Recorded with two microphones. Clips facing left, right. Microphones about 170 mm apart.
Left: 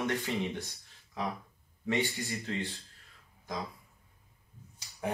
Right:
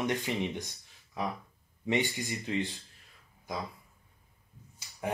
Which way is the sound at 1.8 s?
15° right (ahead or behind).